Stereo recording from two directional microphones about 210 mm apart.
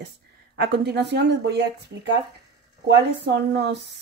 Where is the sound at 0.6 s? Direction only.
50° right (ahead or behind).